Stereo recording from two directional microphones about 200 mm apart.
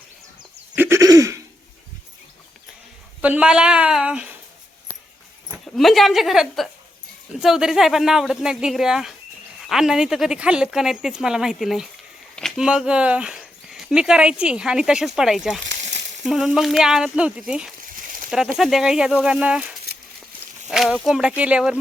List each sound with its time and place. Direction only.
0.8 s throat clearing: 15° right (ahead or behind)
3.2 s speech: 5° right (ahead or behind)
5.5 s speech: centre (ahead or behind)
15.6 s a sound: 65° right (ahead or behind)
16.2 s speech: centre (ahead or behind)